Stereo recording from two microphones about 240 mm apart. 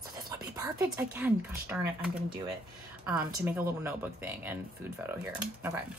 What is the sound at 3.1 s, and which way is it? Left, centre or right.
Speech, centre.